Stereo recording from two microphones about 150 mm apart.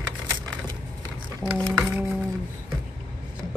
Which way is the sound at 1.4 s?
5° left (ahead or behind).